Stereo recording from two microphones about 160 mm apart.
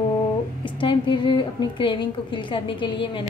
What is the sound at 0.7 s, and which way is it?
A woman's voice, 30° left (ahead or behind).